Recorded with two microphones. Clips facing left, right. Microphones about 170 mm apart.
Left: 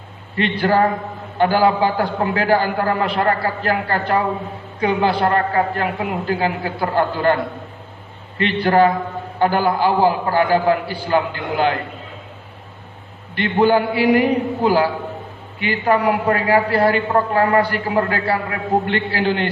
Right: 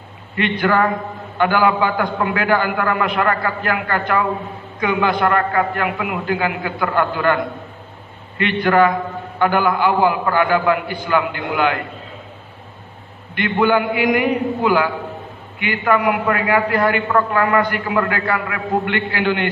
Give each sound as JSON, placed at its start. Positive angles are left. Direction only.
{"t": 0.6, "sound": "a man's voice", "side_deg": 35}
{"t": 8.4, "sound": "a man's voice", "side_deg": 35}
{"t": 13.3, "sound": "a man's voice", "side_deg": 35}